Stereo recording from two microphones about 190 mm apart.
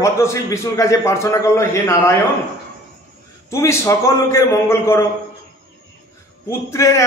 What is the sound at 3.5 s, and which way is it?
A man's voice, 15° left (ahead or behind).